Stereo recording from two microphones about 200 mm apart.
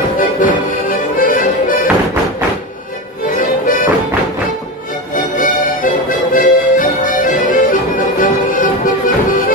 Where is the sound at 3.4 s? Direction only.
45° left (ahead or behind).